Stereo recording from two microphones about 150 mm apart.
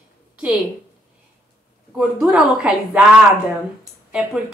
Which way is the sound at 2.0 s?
5° right (ahead or behind).